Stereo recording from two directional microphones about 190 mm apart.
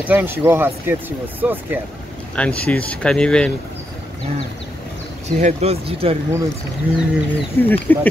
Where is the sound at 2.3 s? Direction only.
5° left (ahead or behind).